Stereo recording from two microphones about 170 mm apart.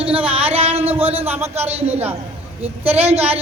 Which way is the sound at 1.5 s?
40° right (ahead or behind).